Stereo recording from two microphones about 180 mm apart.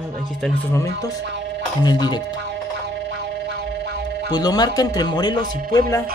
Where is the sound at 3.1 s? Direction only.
65° right (ahead or behind).